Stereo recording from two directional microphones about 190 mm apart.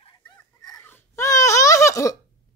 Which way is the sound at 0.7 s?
10° left (ahead or behind).